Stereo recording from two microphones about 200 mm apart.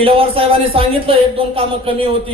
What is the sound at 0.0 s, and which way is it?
A man's voice, 30° right (ahead or behind).